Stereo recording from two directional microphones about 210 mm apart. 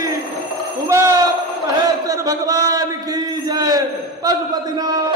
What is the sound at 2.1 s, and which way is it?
Crowd, 15° right (ahead or behind).